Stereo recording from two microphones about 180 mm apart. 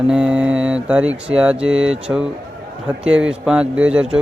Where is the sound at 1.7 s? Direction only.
90° right.